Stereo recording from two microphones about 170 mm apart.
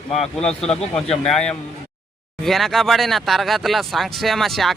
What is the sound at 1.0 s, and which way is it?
Speech, 35° left (ahead or behind).